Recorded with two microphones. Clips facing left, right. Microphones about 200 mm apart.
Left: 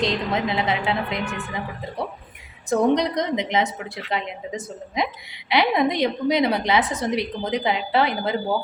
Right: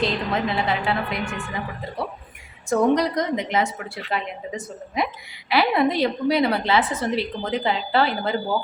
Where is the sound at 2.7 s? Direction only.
20° left (ahead or behind).